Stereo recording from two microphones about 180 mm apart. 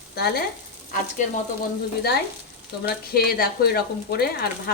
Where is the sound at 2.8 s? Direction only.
60° left (ahead or behind).